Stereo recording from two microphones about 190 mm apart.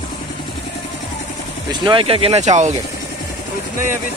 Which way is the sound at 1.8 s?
30° right (ahead or behind).